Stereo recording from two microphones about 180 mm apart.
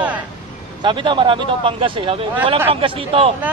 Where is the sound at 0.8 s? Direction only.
25° right (ahead or behind).